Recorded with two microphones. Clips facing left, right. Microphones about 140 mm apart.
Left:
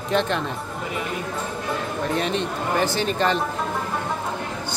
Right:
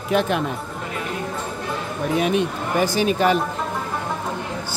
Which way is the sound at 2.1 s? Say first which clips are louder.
Right 7 dB; 10° right (ahead or behind).